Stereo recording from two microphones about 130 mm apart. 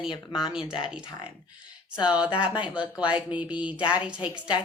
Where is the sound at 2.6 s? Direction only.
10° right (ahead or behind).